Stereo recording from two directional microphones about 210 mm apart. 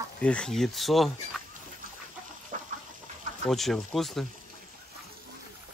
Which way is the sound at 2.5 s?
40° right (ahead or behind).